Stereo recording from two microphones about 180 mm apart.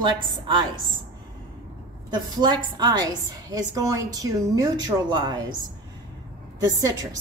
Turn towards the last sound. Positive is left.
turn(degrees=-20)  # may be behind; listen again after turning